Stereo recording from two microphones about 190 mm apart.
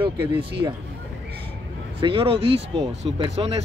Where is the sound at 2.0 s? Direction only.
25° right (ahead or behind).